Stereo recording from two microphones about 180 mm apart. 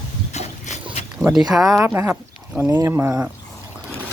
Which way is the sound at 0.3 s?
40° left (ahead or behind).